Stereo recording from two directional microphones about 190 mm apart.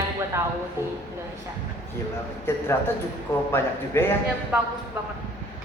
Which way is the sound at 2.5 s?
10° left (ahead or behind).